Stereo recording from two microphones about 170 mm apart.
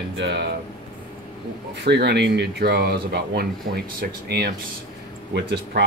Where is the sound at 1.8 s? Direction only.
80° right.